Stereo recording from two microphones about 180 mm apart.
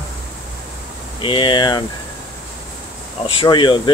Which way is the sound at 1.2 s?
25° left (ahead or behind).